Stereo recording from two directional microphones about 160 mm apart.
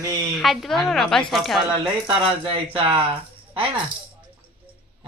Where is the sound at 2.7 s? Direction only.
35° right (ahead or behind).